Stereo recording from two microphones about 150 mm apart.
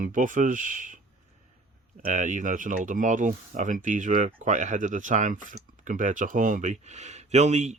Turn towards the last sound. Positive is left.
turn(degrees=-50)  # may be behind; listen again after turning